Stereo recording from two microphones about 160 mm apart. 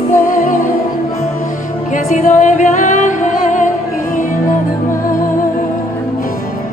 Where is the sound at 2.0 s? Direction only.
50° left (ahead or behind).